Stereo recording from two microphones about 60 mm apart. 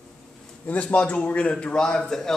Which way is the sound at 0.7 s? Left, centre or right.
Left.